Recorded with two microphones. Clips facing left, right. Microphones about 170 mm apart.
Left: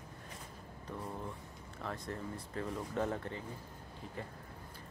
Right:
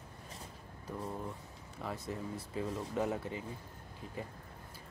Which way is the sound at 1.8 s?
10° right (ahead or behind).